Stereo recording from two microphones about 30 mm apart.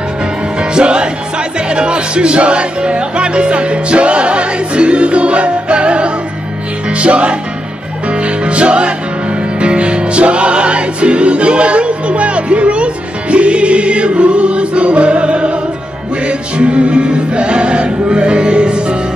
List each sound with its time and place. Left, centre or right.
0.6 s music: right